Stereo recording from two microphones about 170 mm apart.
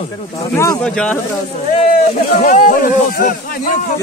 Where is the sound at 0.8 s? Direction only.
5° left (ahead or behind).